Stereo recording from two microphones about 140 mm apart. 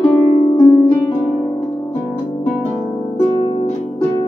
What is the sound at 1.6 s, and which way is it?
Music, 20° left (ahead or behind).